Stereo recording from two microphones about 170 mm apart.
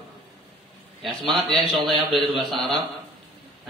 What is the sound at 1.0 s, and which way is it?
A man's voice, centre (ahead or behind).